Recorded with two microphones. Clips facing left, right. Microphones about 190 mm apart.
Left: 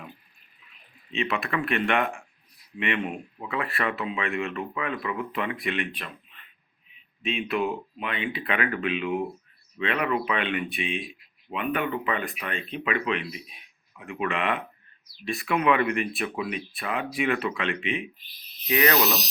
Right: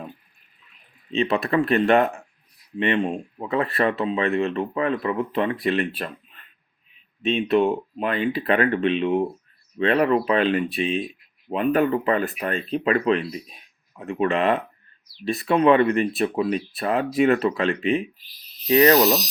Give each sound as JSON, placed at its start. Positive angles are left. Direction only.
{"t": 1.1, "sound": "speech", "side_deg": -35}
{"t": 7.3, "sound": "speech", "side_deg": -35}